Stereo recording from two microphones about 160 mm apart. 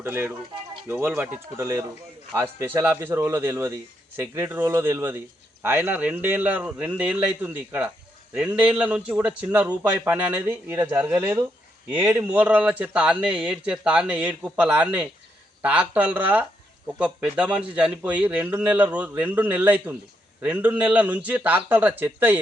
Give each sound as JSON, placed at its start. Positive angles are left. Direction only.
{"t": 0.0, "sound": "a man's voice", "side_deg": -15}